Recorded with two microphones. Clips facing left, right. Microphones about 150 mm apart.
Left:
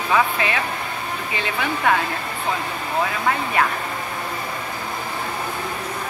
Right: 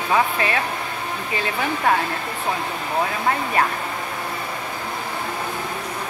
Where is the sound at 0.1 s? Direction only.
40° right (ahead or behind).